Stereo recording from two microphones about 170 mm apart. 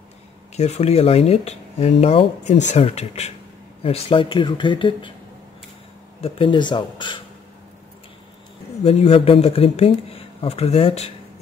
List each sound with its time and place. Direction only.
0.6 s speech: 40° left (ahead or behind)
6.2 s speech: 30° left (ahead or behind)
8.8 s speech: 40° left (ahead or behind)